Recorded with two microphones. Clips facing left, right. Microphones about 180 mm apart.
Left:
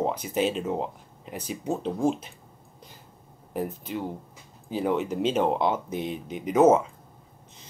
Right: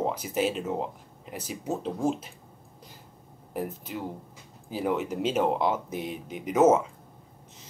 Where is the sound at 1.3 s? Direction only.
5° right (ahead or behind).